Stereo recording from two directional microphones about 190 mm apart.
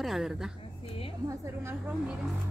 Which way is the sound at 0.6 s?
30° left (ahead or behind).